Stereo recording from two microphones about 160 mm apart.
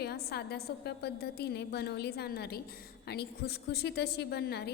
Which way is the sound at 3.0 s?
90° left.